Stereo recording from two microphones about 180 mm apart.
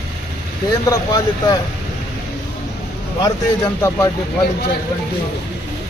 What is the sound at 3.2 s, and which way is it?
Speech, 20° left (ahead or behind).